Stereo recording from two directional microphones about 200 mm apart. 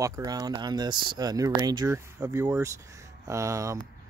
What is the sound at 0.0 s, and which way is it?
Speech, 20° right (ahead or behind).